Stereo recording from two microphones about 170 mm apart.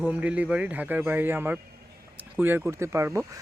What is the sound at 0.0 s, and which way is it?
Speech, 10° right (ahead or behind).